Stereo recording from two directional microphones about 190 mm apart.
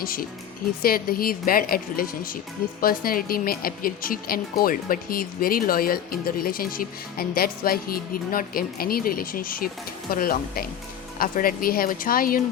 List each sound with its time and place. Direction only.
0.0 s speech: 50° left (ahead or behind)